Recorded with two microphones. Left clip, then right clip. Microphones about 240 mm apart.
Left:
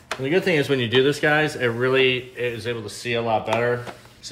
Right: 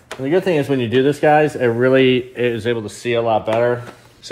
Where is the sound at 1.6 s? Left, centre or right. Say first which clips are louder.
Right 5 dB; centre.